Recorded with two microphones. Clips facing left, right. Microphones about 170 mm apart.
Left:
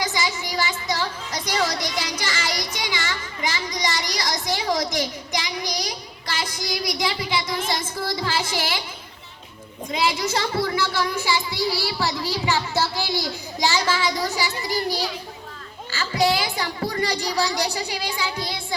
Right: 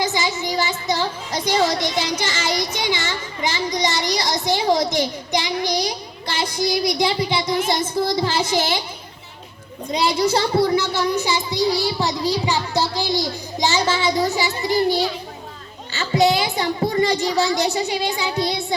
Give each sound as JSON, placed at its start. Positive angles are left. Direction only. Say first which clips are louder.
{"t": 0.0, "sound": "music", "louder": "right 4 dB", "side_deg": -25}
{"t": 7.7, "sound": "child singing", "louder": "right 6 dB", "side_deg": -25}
{"t": 9.9, "sound": "a woman's voice", "louder": "right 5 dB", "side_deg": -30}
{"t": 11.1, "sound": "child singing", "louder": "right 3 dB", "side_deg": -20}
{"t": 13.1, "sound": "a child's voice", "louder": "right 4 dB", "side_deg": -25}
{"t": 15.9, "sound": "a sound", "louder": "right 4 dB", "side_deg": -25}
{"t": 18.2, "sound": "child singing", "louder": "right 6 dB", "side_deg": -25}